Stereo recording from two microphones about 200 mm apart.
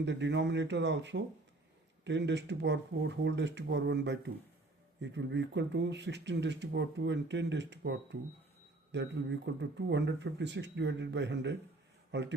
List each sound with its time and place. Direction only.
0.0 s speech: 60° right (ahead or behind)